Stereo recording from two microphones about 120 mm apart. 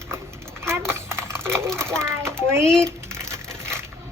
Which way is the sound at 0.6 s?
20° right (ahead or behind).